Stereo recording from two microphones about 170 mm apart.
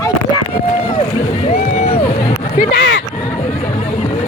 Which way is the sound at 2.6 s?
85° left.